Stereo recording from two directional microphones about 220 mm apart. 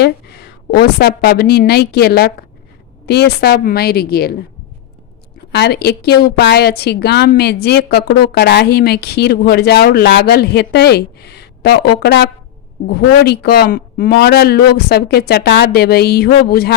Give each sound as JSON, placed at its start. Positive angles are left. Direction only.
{"t": 0.0, "sound": "a woman's voice", "side_deg": 45}
{"t": 5.5, "sound": "a woman's voice", "side_deg": 50}